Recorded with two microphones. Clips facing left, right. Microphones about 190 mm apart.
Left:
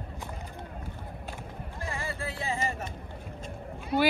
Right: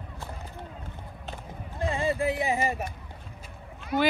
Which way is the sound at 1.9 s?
20° right (ahead or behind).